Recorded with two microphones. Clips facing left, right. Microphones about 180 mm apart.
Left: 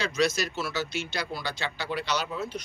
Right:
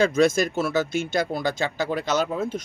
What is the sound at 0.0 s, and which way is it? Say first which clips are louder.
Speech: right 8 dB; 50° right (ahead or behind).